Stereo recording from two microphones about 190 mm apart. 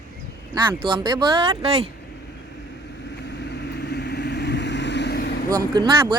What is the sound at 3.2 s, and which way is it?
Vehicle, 60° left (ahead or behind).